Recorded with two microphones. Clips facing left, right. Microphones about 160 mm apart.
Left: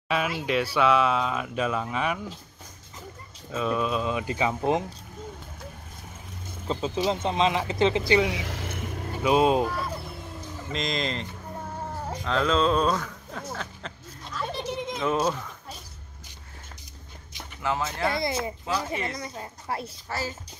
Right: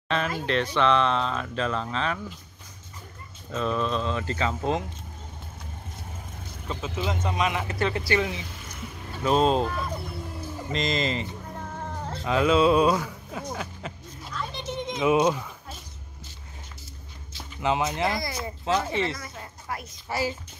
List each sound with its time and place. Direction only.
0.4 s speech: 10° left (ahead or behind)
3.5 s speech: 5° left (ahead or behind)
7.2 s speech: 25° left (ahead or behind)
8.3 s vehicle: 90° left; by 9.1 s 50° left (ahead or behind)
9.1 s speech: 10° left (ahead or behind)
11.5 s music: 10° left (ahead or behind)
12.3 s speech: 10° right (ahead or behind)
14.5 s a sound: 35° left (ahead or behind)
15.0 s speech: 10° right (ahead or behind)
17.6 s speech: 20° right (ahead or behind)
18.1 s speech: 25° left (ahead or behind)
18.8 s speech: 25° right (ahead or behind)
19.1 s speech: 25° left (ahead or behind)
20.1 s speech: 15° right (ahead or behind)